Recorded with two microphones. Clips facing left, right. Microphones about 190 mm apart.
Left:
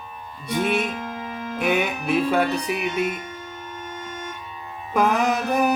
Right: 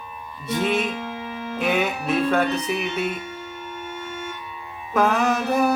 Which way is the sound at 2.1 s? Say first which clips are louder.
Left 1 dB; 10° left (ahead or behind).